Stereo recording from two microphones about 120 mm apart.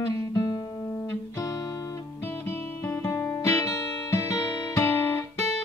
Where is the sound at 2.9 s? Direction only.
20° left (ahead or behind).